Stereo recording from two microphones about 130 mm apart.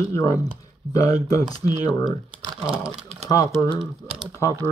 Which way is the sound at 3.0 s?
60° right (ahead or behind).